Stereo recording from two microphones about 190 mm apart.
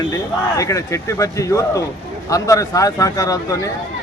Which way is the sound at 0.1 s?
15° left (ahead or behind).